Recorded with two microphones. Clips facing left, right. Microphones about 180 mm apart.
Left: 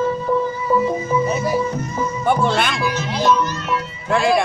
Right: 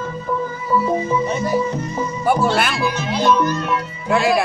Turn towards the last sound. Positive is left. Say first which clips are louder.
# even
turn(degrees=-5)  # may be behind; listen again after turning